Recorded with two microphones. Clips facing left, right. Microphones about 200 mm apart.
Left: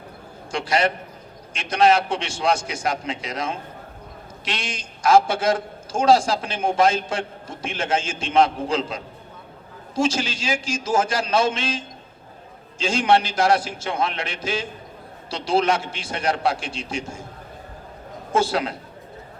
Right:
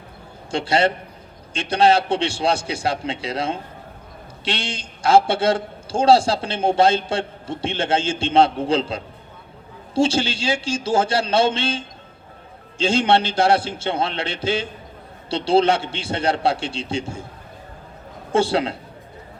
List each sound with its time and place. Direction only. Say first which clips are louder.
0.5 s a man's voice: right 3 dB; 25° right (ahead or behind)
12.8 s a man's voice: right 2 dB; 25° right (ahead or behind)
18.3 s a man's voice: right 3 dB; 30° right (ahead or behind)